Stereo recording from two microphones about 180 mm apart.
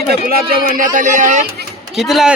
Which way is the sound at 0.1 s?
55° right (ahead or behind).